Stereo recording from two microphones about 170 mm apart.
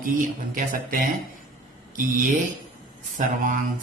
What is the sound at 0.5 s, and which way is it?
Speech, 55° right (ahead or behind).